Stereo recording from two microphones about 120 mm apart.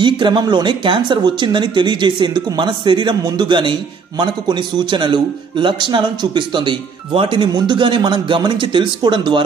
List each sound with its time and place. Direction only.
0.0 s a man's voice: 40° right (ahead or behind)